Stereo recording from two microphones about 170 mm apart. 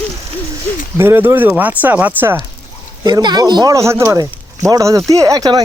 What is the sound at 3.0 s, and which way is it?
Speech, 25° right (ahead or behind).